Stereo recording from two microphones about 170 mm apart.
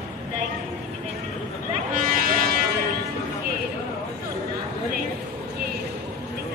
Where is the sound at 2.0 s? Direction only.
60° right (ahead or behind).